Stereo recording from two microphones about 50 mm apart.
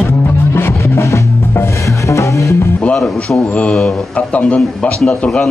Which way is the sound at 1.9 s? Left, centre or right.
Left.